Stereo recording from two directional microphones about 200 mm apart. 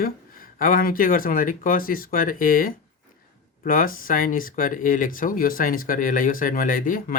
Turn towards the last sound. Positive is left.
turn(degrees=45)  # may be behind; listen again after turning